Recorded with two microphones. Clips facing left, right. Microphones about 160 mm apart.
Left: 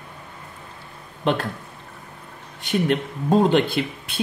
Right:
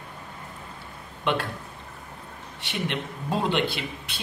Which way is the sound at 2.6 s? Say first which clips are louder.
Left 9 dB; 45° left (ahead or behind).